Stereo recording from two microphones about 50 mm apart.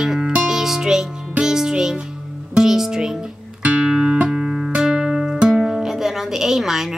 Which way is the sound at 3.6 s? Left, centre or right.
Right.